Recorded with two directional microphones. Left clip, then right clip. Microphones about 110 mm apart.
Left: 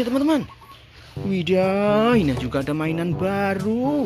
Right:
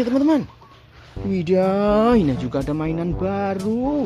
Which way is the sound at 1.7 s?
30° right (ahead or behind).